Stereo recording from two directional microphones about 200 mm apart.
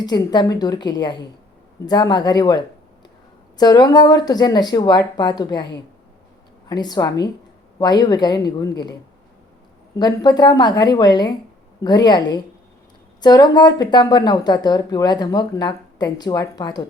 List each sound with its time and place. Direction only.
0.0 s speech: 20° left (ahead or behind)
6.7 s speech: 20° left (ahead or behind)